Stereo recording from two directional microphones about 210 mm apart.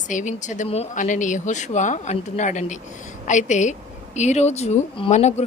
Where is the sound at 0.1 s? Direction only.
35° left (ahead or behind).